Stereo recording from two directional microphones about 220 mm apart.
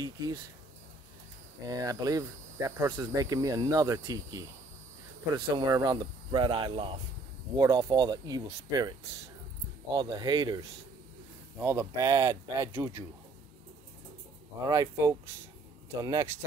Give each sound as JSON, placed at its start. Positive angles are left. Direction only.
{"t": 1.7, "sound": "cricket", "side_deg": -15}
{"t": 5.3, "sound": "speech", "side_deg": -20}
{"t": 9.9, "sound": "speech", "side_deg": -20}
{"t": 11.6, "sound": "cricket", "side_deg": -10}
{"t": 14.7, "sound": "cricket", "side_deg": -15}